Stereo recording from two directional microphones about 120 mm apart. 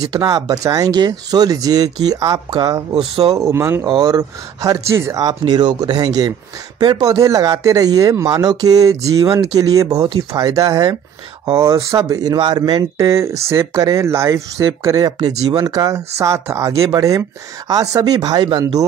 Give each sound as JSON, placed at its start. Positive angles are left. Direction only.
{"t": 0.2, "sound": "speech", "side_deg": -30}
{"t": 3.8, "sound": "speech", "side_deg": -35}
{"t": 5.2, "sound": "speech", "side_deg": -35}